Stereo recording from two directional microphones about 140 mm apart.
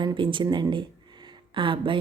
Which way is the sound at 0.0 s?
35° right (ahead or behind).